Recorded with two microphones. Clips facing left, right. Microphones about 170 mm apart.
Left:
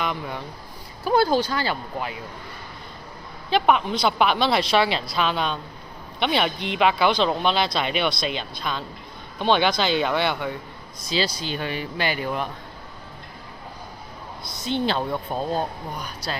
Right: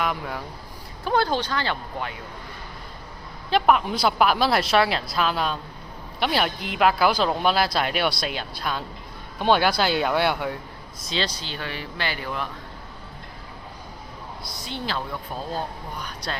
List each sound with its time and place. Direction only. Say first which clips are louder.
0.0 s speech: right 1 dB; 5° right (ahead or behind)
1.0 s speech: left 3 dB; 10° left (ahead or behind)
3.5 s speech: even; centre (ahead or behind)
11.0 s speech: left 3 dB; 5° left (ahead or behind)
14.4 s a woman's voice: left 8 dB; 20° left (ahead or behind)
16.0 s speech: even; 5° left (ahead or behind)